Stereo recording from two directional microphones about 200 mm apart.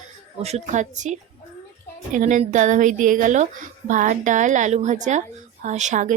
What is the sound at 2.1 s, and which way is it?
Speech, 40° right (ahead or behind).